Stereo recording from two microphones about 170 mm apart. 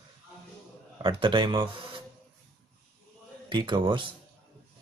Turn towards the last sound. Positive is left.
turn(degrees=-30)  # may be behind; listen again after turning